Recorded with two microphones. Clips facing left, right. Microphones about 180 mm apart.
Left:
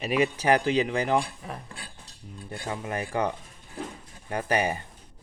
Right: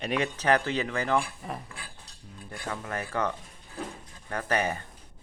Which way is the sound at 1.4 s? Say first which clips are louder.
Right 1 dB; centre (ahead or behind).